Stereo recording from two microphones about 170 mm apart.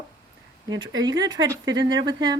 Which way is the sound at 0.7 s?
25° right (ahead or behind).